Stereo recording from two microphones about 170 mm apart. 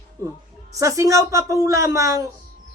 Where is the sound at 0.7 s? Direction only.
20° right (ahead or behind).